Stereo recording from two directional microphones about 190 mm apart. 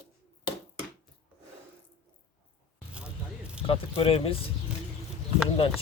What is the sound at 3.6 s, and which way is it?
Speech, 30° left (ahead or behind).